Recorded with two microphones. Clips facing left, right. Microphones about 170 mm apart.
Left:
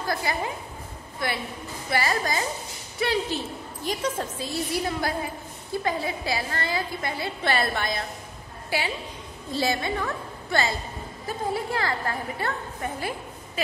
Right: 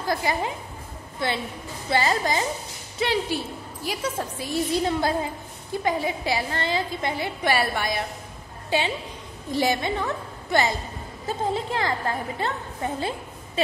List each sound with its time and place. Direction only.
0.1 s a woman's voice: 20° right (ahead or behind)
1.9 s a woman's voice: 25° right (ahead or behind)